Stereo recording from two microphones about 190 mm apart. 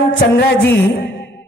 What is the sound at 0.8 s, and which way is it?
Music, 60° left (ahead or behind).